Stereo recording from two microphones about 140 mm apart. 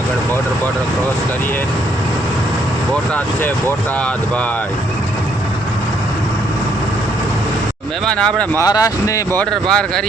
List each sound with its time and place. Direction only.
8.0 s speech: 5° left (ahead or behind)
8.5 s speech: 25° left (ahead or behind)
9.4 s speech: 5° left (ahead or behind)